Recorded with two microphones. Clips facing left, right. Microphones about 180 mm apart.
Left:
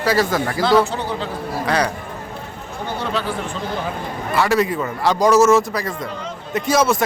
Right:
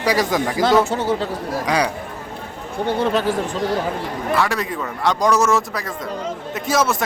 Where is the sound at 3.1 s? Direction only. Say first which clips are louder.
Right 4 dB; 45° right (ahead or behind).